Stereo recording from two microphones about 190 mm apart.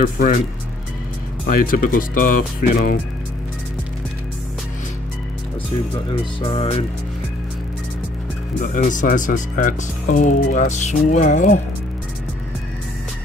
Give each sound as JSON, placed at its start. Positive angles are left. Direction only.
{"t": 0.0, "sound": "speech", "side_deg": 50}
{"t": 1.4, "sound": "speech", "side_deg": 50}
{"t": 6.4, "sound": "music", "side_deg": 30}
{"t": 8.5, "sound": "speech", "side_deg": 45}